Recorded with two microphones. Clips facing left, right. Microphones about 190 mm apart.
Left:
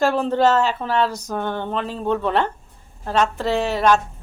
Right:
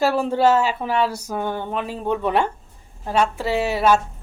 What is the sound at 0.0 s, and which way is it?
Speech, 10° right (ahead or behind).